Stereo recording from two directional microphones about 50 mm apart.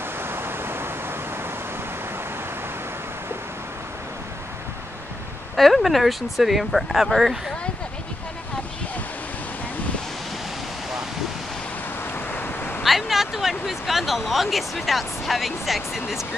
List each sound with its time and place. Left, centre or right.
0.2 s waves: right
5.6 s speech: centre
12.3 s a sound: left
12.8 s speech: centre